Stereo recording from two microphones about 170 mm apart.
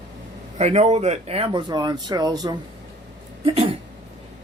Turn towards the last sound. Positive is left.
turn(degrees=-35)  # may be behind; listen again after turning